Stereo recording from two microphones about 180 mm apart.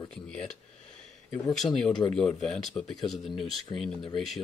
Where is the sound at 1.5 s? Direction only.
Centre (ahead or behind).